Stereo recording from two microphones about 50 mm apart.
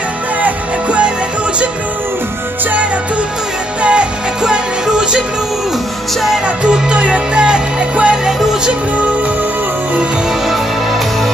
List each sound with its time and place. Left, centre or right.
0.4 s music: right
3.8 s music: centre
6.4 s music: centre